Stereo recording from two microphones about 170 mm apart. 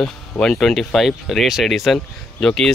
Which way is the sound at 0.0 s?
5° left (ahead or behind).